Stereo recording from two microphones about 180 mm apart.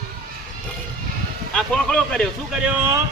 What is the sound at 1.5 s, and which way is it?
A man's voice, 5° left (ahead or behind).